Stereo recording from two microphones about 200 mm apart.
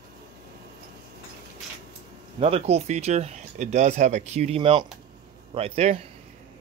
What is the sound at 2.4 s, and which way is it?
A man's voice, 30° right (ahead or behind).